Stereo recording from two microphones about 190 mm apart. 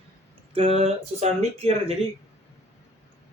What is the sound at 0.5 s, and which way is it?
Speech, 30° right (ahead or behind).